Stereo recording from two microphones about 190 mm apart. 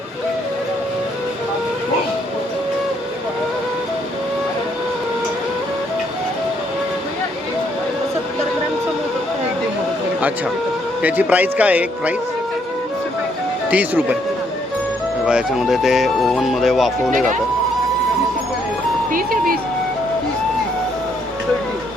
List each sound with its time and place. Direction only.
11.0 s a man's voice: 10° right (ahead or behind)
13.7 s a man's voice: 10° right (ahead or behind)
15.3 s speech: 5° right (ahead or behind)
17.1 s speech: 45° right (ahead or behind)
19.1 s ice cream truck: 50° right (ahead or behind)